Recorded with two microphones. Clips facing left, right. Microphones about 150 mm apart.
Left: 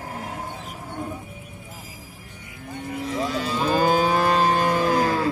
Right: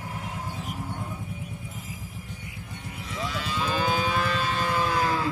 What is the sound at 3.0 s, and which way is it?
Livestock, 40° left (ahead or behind).